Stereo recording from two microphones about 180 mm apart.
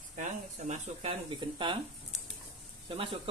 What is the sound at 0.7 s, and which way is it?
Speech, 30° right (ahead or behind).